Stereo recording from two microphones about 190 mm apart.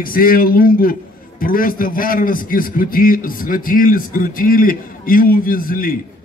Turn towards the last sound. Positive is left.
turn(degrees=50)  # may be behind; listen again after turning